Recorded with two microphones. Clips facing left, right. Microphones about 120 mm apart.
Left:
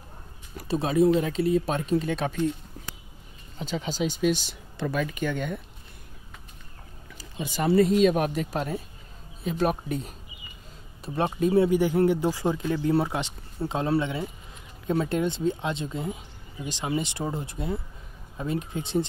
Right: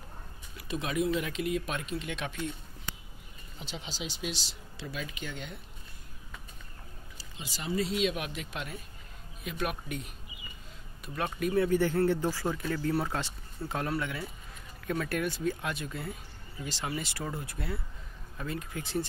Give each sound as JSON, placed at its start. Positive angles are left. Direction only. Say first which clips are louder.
{"t": 0.6, "sound": "speech", "louder": "left 9 dB", "side_deg": 35}
{"t": 3.5, "sound": "speech", "louder": "left 11 dB", "side_deg": 45}
{"t": 7.2, "sound": "speech", "louder": "left 14 dB", "side_deg": 55}
{"t": 7.9, "sound": "speech", "louder": "left 10 dB", "side_deg": 45}
{"t": 11.1, "sound": "speech", "louder": "left 7 dB", "side_deg": 30}
{"t": 11.7, "sound": "speech", "louder": "left 4 dB", "side_deg": 15}